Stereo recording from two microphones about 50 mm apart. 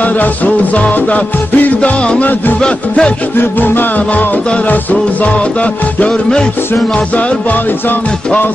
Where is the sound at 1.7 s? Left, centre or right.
Left.